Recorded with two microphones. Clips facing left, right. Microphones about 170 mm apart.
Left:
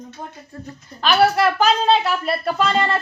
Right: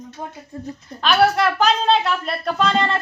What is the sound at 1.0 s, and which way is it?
A woman's voice, centre (ahead or behind).